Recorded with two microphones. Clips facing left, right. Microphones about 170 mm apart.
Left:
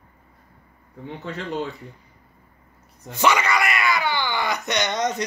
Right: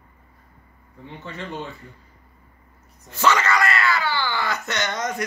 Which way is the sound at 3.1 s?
15° left (ahead or behind).